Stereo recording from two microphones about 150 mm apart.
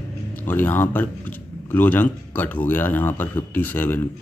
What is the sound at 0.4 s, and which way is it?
A man's voice, 15° left (ahead or behind).